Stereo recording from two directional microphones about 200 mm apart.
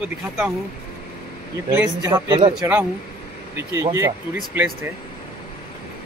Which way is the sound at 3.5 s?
15° right (ahead or behind).